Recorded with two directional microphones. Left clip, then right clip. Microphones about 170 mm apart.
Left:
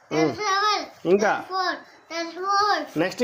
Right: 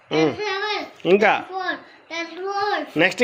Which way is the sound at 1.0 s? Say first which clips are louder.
Right 4 dB; 5° right (ahead or behind).